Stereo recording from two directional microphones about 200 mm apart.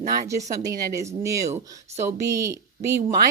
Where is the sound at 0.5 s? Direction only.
15° right (ahead or behind).